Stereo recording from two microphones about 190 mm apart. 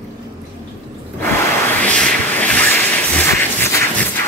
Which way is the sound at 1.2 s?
10° left (ahead or behind).